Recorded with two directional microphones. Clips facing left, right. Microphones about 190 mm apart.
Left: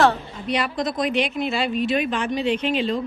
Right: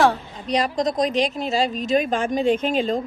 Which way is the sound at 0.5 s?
40° right (ahead or behind).